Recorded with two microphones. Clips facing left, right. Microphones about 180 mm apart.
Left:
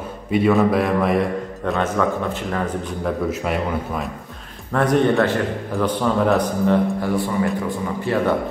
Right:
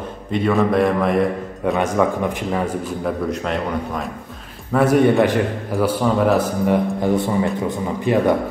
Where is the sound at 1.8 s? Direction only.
15° right (ahead or behind).